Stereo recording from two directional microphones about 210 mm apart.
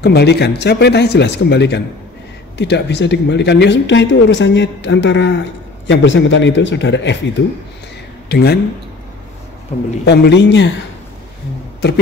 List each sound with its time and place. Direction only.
0.0 s speech: 50° left (ahead or behind)
8.3 s speech: 50° left (ahead or behind)
10.0 s speech: 55° left (ahead or behind)